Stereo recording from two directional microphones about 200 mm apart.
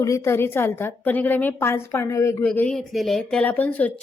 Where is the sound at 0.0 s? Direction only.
15° left (ahead or behind).